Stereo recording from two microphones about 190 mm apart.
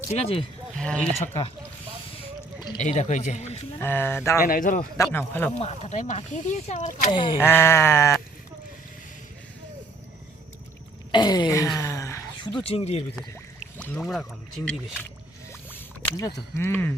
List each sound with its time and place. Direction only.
0.1 s speech: 35° left (ahead or behind)
0.8 s speech: 5° left (ahead or behind)
2.8 s speech: 40° left (ahead or behind)
3.8 s sheep: 10° left (ahead or behind)
4.4 s speech: 45° left (ahead or behind)
5.0 s sheep: 10° left (ahead or behind)
5.5 s speech: 35° left (ahead or behind)
7.1 s speech: 25° left (ahead or behind)
7.3 s sheep: 10° left (ahead or behind)
11.1 s a sound: 20° left (ahead or behind)
13.1 s speech: centre (ahead or behind)
15.7 s a sound: 15° left (ahead or behind)
16.6 s sheep: 10° left (ahead or behind)